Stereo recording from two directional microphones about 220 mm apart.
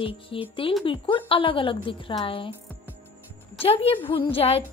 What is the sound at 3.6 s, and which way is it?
A woman's voice, 25° left (ahead or behind).